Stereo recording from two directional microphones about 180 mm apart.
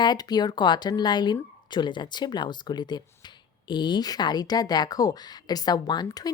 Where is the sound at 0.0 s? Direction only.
25° left (ahead or behind).